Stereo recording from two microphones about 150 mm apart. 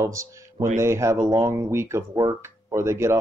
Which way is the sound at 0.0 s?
20° right (ahead or behind).